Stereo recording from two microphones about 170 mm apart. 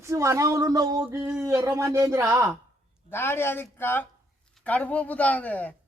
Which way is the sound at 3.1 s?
15° left (ahead or behind).